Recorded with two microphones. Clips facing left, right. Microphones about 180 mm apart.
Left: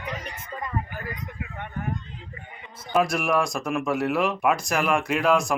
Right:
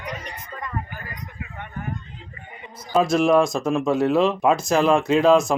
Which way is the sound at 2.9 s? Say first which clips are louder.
Right 5 dB; 25° right (ahead or behind).